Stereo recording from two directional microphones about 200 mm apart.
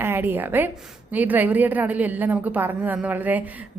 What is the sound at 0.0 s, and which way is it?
A woman's voice, 10° right (ahead or behind).